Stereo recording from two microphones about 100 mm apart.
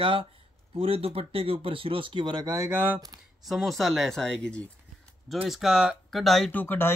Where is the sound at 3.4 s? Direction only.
Centre (ahead or behind).